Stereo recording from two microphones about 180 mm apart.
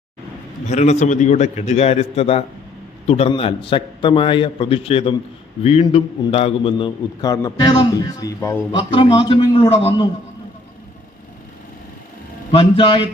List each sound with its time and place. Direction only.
0.7 s a man's voice: 40° left (ahead or behind); by 8.6 s 15° left (ahead or behind)
8.8 s a man's voice: 25° left (ahead or behind)
12.5 s a man's voice: 30° left (ahead or behind)